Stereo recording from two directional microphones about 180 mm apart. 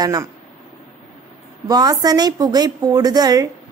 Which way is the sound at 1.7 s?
20° right (ahead or behind).